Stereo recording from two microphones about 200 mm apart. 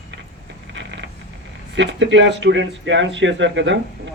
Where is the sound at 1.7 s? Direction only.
65° right (ahead or behind).